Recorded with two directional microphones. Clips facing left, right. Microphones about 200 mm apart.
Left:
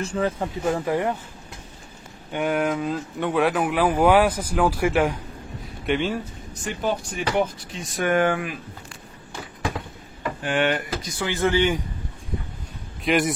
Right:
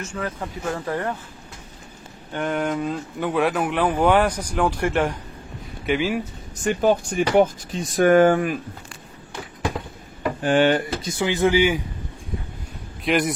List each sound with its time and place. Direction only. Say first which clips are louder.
0.0 s speech: left 5 dB; 30° left (ahead or behind)
0.7 s speech: left 1 dB; 15° left (ahead or behind)
2.3 s speech: left 1 dB; 5° left (ahead or behind)
5.9 s speech: right 2 dB; 5° right (ahead or behind)
6.8 s speech: right 6 dB; 50° right (ahead or behind)
10.4 s speech: right 5 dB; 35° right (ahead or behind); by 11.8 s 10° right (ahead or behind)
13.0 s speech: even; centre (ahead or behind)